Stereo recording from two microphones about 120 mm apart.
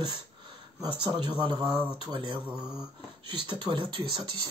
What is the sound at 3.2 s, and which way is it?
Speech, 40° right (ahead or behind).